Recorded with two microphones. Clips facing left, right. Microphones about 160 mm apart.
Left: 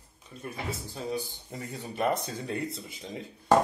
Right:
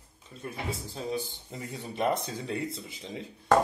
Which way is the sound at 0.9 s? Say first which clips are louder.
Even; 25° right (ahead or behind).